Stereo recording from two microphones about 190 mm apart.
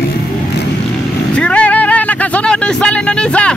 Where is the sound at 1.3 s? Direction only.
5° left (ahead or behind).